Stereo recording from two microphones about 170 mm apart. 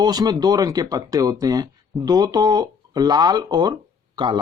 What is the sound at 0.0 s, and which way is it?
Speech, 25° right (ahead or behind).